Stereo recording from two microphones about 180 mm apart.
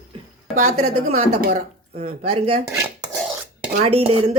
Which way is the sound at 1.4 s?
55° right (ahead or behind).